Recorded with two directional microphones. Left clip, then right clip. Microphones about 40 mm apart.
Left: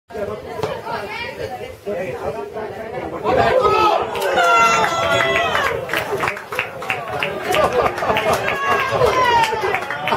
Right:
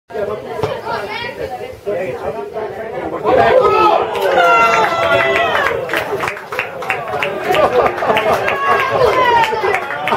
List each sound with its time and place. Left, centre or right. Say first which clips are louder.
0.6 s chatter: right 4 dB; centre
3.3 s chatter: right 5 dB; left
4.1 s run: right 4 dB; centre
5.7 s a sound: right 4 dB; centre
8.3 s run: right 4 dB; left